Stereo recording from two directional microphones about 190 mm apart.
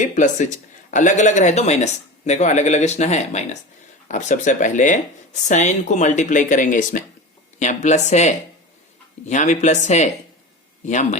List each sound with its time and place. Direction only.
0.0 s a man's voice: 40° left (ahead or behind)